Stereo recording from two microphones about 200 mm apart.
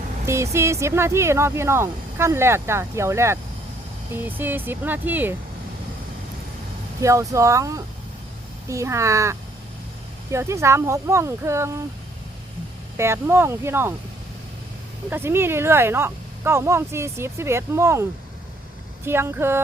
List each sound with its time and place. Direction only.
0.3 s speech: 15° right (ahead or behind)
7.0 s speech: 15° right (ahead or behind)
13.0 s speech: 10° right (ahead or behind)
15.1 s speech: 10° right (ahead or behind)
19.0 s speech: 10° right (ahead or behind)